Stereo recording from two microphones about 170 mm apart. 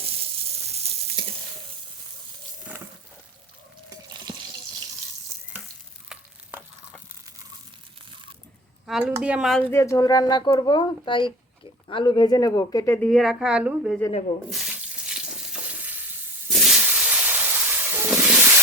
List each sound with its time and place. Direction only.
0.0 s sizzle: 35° right (ahead or behind)
4.1 s water tap: 25° right (ahead or behind)
6.1 s frying: 5° right (ahead or behind)
8.9 s a woman's voice: 5° right (ahead or behind)
9.6 s speech: 15° left (ahead or behind)
13.1 s a woman's voice: centre (ahead or behind)
14.5 s water tap: 5° right (ahead or behind)
15.8 s frying: 10° right (ahead or behind)
16.5 s hiss: centre (ahead or behind)